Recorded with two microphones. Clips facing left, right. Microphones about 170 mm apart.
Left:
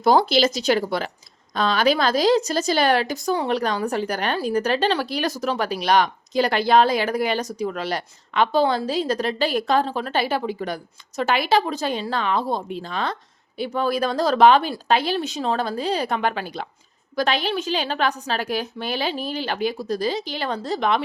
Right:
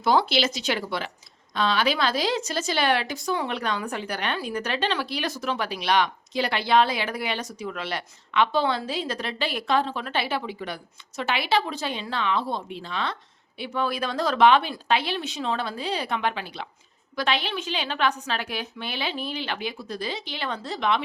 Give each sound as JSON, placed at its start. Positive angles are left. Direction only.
{"t": 0.0, "sound": "a woman's voice", "side_deg": 40}